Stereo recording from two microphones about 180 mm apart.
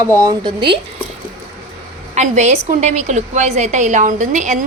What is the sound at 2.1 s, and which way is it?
A woman's voice, 40° right (ahead or behind).